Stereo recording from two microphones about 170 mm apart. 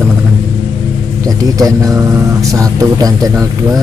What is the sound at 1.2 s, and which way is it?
Speech, 20° right (ahead or behind).